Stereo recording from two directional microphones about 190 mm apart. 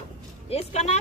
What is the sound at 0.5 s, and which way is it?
Speech, 35° left (ahead or behind).